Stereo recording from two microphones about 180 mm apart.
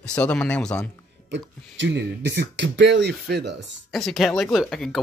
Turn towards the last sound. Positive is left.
turn(degrees=0)  # may be behind; listen again after turning